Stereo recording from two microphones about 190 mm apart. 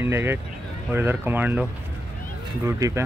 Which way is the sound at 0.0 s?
10° right (ahead or behind).